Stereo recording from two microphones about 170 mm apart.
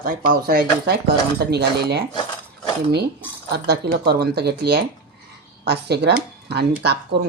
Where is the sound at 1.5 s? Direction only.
75° right (ahead or behind).